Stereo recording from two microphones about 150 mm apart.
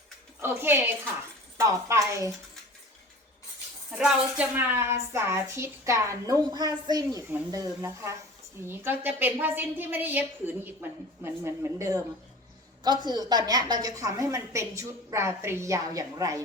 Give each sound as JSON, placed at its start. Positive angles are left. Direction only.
{"t": 0.3, "sound": "a woman's voice", "side_deg": -15}
{"t": 3.9, "sound": "a woman's voice", "side_deg": -5}
{"t": 13.1, "sound": "a woman's voice", "side_deg": -25}